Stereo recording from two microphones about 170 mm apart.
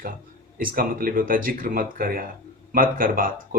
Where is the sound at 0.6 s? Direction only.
55° right (ahead or behind).